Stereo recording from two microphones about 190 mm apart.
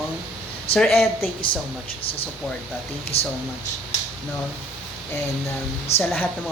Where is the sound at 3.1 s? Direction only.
30° left (ahead or behind).